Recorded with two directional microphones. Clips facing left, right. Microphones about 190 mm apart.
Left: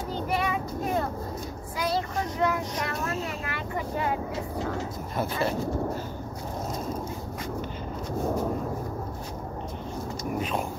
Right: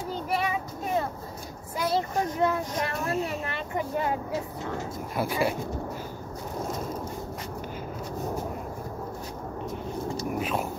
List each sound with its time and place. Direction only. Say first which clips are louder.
2.0 s child singing: right 3 dB; 25° right (ahead or behind)
3.1 s a sound: right 3 dB; 25° right (ahead or behind)
5.1 s speech: right 1 dB; 10° right (ahead or behind)